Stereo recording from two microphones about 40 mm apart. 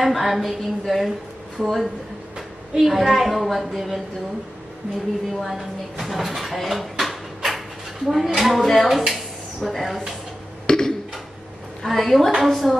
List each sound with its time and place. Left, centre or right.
0.0 s a woman's voice: centre
2.3 s a woman's voice: centre
5.3 s a woman's voice: centre
10.7 s a sound: left
11.8 s a woman's voice: centre